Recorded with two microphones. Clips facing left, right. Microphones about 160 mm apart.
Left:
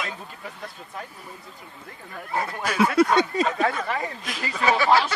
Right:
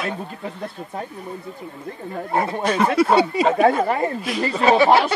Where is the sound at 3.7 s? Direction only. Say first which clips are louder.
Right 8 dB; 40° right (ahead or behind).